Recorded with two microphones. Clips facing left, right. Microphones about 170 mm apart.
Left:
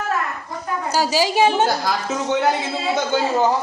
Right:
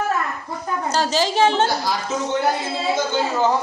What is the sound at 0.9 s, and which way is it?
Speech, 10° left (ahead or behind).